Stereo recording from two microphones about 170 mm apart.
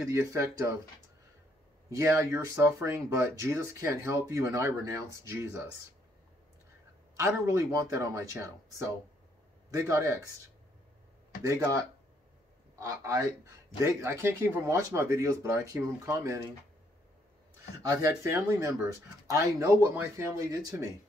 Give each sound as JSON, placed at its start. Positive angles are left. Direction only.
{"t": 0.0, "sound": "speech", "side_deg": -15}
{"t": 1.9, "sound": "speech", "side_deg": -20}
{"t": 7.2, "sound": "speech", "side_deg": -20}
{"t": 11.4, "sound": "speech", "side_deg": -20}
{"t": 17.8, "sound": "speech", "side_deg": -20}